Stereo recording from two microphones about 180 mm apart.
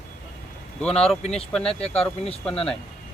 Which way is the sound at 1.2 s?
35° left (ahead or behind).